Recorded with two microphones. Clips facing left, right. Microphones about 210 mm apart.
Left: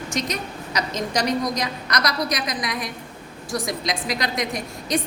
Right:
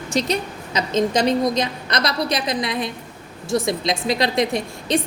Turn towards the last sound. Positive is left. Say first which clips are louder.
# right 4 dB
turn(degrees=-25)  # may be behind; listen again after turning